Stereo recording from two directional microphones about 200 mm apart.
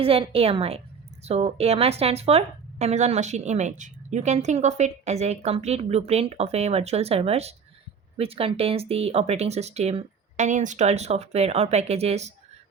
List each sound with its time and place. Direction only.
0.0 s a woman's voice: 30° right (ahead or behind)